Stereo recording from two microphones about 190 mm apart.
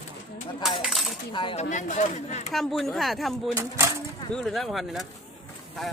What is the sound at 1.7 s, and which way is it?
Speech, 40° left (ahead or behind).